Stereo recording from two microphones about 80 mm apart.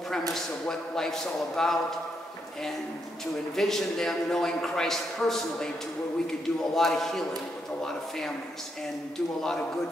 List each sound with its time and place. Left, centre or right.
0.3 s a man's voice: centre
3.5 s a man's voice: centre
6.7 s a man's voice: centre
9.4 s a man's voice: centre